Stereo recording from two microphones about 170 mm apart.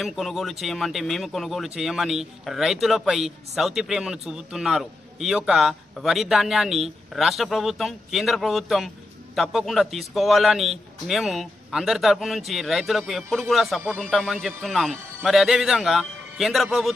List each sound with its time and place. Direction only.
0.0 s speech: centre (ahead or behind)